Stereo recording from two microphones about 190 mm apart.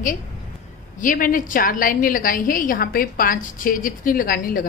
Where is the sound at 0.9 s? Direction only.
45° left (ahead or behind).